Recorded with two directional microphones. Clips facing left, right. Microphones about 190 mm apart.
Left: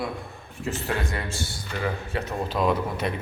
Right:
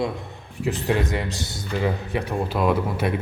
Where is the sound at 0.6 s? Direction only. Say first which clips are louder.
Right 6 dB; 15° right (ahead or behind).